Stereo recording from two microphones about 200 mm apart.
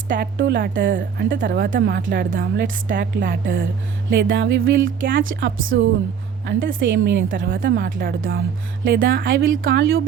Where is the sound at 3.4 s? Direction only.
70° right (ahead or behind).